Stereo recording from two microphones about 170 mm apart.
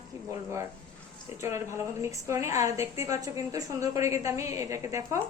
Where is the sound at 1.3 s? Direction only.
15° right (ahead or behind).